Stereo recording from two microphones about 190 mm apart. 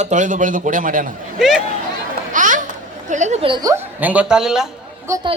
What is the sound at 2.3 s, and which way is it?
Music, 45° right (ahead or behind).